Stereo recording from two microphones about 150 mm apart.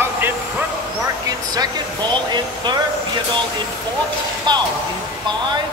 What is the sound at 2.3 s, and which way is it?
Vehicle, 30° right (ahead or behind).